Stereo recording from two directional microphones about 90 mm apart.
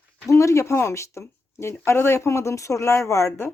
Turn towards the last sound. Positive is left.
turn(degrees=30)  # may be behind; listen again after turning